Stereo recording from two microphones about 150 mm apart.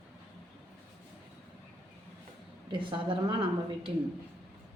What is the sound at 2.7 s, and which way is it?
Speech, 35° right (ahead or behind).